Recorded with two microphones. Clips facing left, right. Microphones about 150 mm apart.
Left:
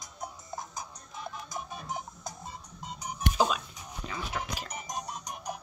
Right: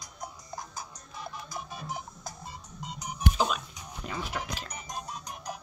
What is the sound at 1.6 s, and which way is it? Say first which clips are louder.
Music: even; 5° right (ahead or behind).